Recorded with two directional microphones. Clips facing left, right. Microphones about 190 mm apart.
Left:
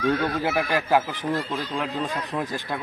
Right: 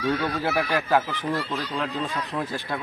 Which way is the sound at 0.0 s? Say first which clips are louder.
Left 2 dB; 50° left (ahead or behind).